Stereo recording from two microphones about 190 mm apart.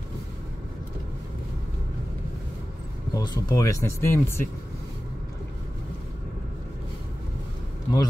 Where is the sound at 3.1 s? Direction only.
15° left (ahead or behind).